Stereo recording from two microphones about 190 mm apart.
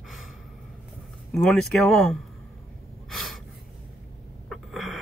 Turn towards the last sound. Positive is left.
turn(degrees=0)  # may be behind; listen again after turning